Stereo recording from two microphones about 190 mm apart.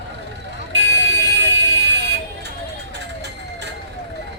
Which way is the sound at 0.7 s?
65° right (ahead or behind).